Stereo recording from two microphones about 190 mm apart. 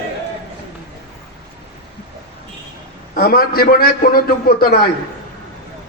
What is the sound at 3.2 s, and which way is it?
A man's voice, 50° left (ahead or behind).